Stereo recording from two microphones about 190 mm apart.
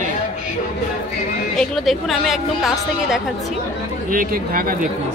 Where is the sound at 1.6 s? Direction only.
Centre (ahead or behind).